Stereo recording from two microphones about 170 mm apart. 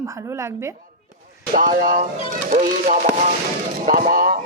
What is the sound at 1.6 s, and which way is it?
Speech, 55° right (ahead or behind).